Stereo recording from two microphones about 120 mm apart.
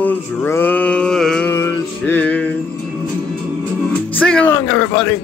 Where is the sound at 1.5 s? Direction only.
20° left (ahead or behind).